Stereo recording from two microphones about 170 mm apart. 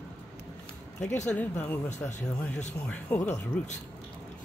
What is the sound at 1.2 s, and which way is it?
Speech, 5° left (ahead or behind).